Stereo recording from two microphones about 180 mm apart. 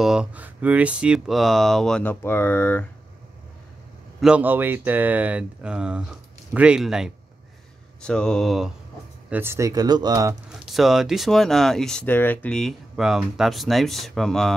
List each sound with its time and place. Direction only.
0.0 s speech: 5° right (ahead or behind)
4.2 s speech: 5° right (ahead or behind)
9.3 s speech: 15° right (ahead or behind)
10.6 s speech: centre (ahead or behind)